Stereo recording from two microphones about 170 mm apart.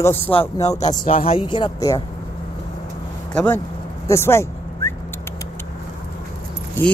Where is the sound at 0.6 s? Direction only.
40° left (ahead or behind).